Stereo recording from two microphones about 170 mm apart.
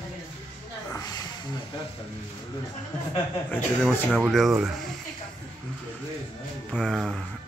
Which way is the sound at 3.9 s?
Centre (ahead or behind).